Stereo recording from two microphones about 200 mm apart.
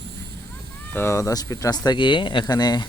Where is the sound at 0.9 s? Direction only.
10° left (ahead or behind).